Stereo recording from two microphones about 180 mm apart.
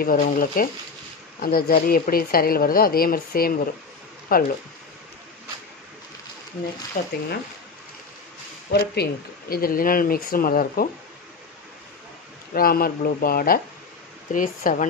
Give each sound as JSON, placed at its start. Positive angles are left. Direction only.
{"t": 0.0, "sound": "a woman's voice", "side_deg": 50}
{"t": 7.0, "sound": "speech", "side_deg": 40}
{"t": 8.7, "sound": "speech", "side_deg": 65}
{"t": 12.5, "sound": "a woman's voice", "side_deg": 55}